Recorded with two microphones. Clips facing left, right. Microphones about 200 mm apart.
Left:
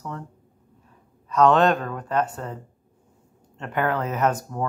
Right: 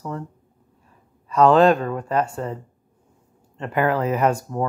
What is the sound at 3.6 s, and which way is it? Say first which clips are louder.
Speech: right 4 dB; 5° right (ahead or behind).